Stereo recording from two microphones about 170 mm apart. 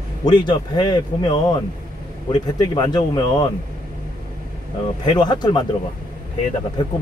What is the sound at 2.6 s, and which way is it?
Speech, 25° left (ahead or behind).